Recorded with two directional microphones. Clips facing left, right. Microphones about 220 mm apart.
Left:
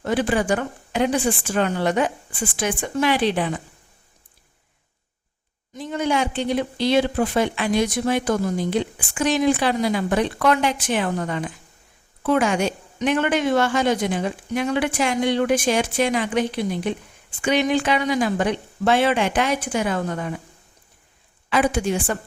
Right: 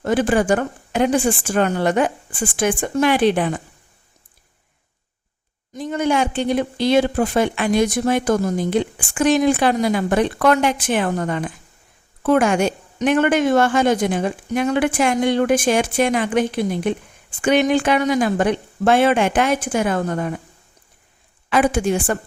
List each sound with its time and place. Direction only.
0.0 s speech: 50° right (ahead or behind)
5.7 s speech: 45° right (ahead or behind)
21.5 s speech: 50° right (ahead or behind)